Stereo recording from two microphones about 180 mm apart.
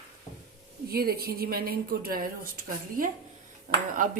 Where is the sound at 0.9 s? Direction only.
60° right (ahead or behind).